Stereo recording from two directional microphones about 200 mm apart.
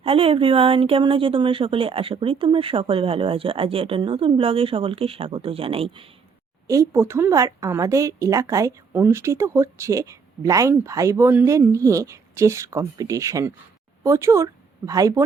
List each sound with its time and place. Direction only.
0.0 s speech: 30° right (ahead or behind)
6.7 s a woman's voice: 15° right (ahead or behind)